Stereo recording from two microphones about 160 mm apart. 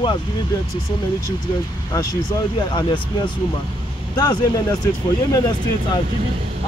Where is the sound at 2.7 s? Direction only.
30° left (ahead or behind).